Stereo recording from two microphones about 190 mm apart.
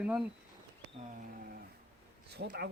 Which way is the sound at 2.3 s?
60° right (ahead or behind).